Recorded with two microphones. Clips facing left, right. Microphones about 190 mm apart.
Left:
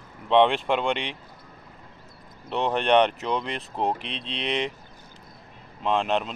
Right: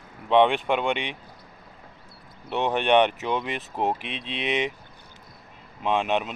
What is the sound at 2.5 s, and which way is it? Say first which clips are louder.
Speech: even; 5° right (ahead or behind).